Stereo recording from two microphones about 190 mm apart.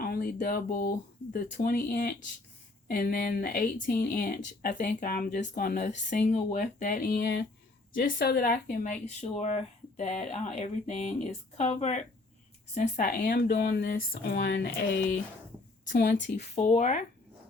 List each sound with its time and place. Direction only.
0.0 s speech: 50° left (ahead or behind); by 15.0 s 70° left (ahead or behind)
15.9 s a woman's voice: 55° left (ahead or behind)
16.3 s speech: 40° left (ahead or behind)